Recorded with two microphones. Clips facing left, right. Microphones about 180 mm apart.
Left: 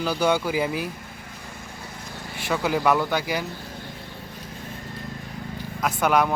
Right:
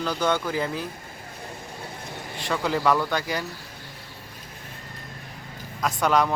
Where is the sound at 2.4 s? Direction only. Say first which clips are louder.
Left 2 dB; 5° left (ahead or behind).